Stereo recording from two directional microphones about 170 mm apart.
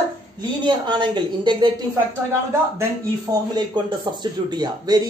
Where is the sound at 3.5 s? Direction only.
25° right (ahead or behind).